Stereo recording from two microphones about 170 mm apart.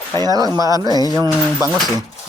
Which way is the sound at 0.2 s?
20° right (ahead or behind).